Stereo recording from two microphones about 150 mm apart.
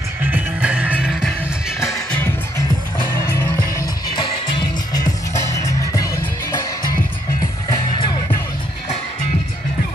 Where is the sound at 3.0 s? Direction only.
15° left (ahead or behind).